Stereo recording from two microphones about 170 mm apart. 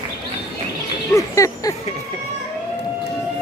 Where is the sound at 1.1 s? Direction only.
20° left (ahead or behind).